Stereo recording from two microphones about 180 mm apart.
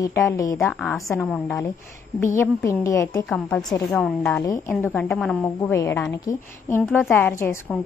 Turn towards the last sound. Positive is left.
turn(degrees=10)  # may be behind; listen again after turning